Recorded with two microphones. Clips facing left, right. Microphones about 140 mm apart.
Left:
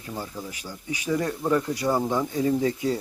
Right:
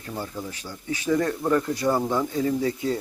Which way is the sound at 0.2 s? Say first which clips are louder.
Right 3 dB; 10° left (ahead or behind).